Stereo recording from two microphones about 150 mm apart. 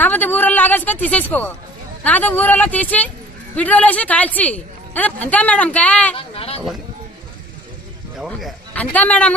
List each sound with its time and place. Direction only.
0.0 s speech: 10° left (ahead or behind)
6.1 s speech: 40° left (ahead or behind)
8.2 s speech: centre (ahead or behind)
8.7 s a man's voice: 10° left (ahead or behind)